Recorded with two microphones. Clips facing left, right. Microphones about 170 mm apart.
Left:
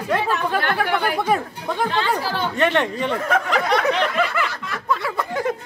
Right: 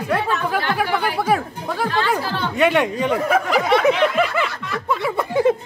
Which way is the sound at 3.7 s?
5° right (ahead or behind).